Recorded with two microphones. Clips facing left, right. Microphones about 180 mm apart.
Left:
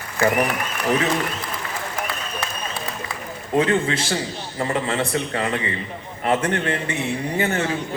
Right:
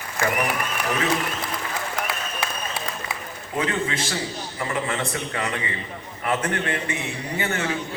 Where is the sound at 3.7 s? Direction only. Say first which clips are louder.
Left 5 dB; 30° left (ahead or behind).